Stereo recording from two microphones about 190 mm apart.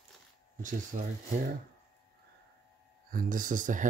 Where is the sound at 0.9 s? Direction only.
45° right (ahead or behind).